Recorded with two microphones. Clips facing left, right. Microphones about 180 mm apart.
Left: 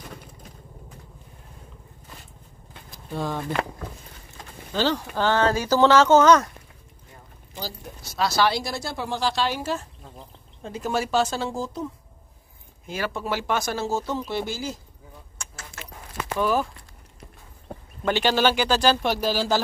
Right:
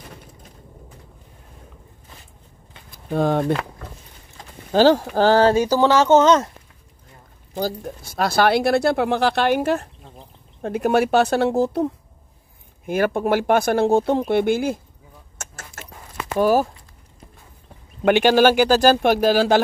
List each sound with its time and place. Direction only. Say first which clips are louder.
2.9 s speech: right 9 dB; 55° right (ahead or behind)
4.7 s speech: right 9 dB; 45° right (ahead or behind)
5.6 s a woman's voice: right 1 dB; 15° right (ahead or behind)
7.5 s speech: right 11 dB; 50° right (ahead or behind)
15.3 s keys jangling: right 4 dB; 45° right (ahead or behind)
16.3 s speech: right 6 dB; 40° right (ahead or behind)
18.0 s speech: right 7 dB; 55° right (ahead or behind)